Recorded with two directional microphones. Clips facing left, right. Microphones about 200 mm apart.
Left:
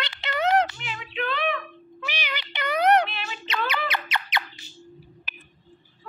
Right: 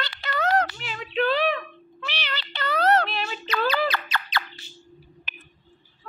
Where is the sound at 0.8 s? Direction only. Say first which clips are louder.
Right 6 dB; 40° right (ahead or behind).